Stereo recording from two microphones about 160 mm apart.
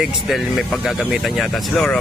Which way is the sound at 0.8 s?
Centre (ahead or behind).